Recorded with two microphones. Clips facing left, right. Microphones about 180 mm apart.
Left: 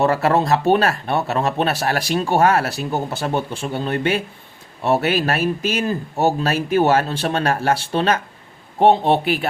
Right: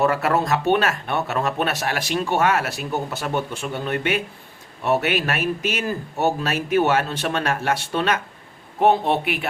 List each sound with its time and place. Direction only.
0.0 s speech: 30° left (ahead or behind)